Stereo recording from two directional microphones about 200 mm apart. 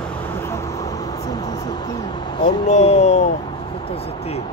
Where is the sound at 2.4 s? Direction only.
35° left (ahead or behind).